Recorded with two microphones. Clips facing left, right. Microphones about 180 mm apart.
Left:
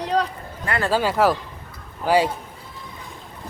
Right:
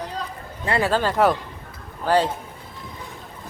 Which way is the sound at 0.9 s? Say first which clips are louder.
Left 1 dB; 10° left (ahead or behind).